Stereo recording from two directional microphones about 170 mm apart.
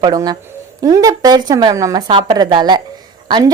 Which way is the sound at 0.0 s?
20° right (ahead or behind).